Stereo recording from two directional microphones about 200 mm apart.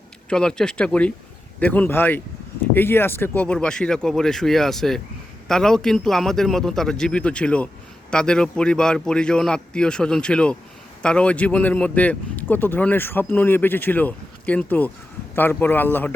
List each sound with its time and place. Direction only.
0.3 s a man's voice: 5° left (ahead or behind)